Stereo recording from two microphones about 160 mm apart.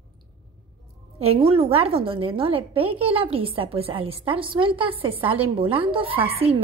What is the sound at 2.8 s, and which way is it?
Speech, 10° right (ahead or behind).